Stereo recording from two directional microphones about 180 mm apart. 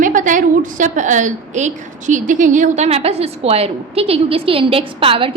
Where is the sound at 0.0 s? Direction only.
45° right (ahead or behind).